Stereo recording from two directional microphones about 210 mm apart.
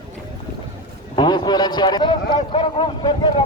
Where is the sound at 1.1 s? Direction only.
20° left (ahead or behind).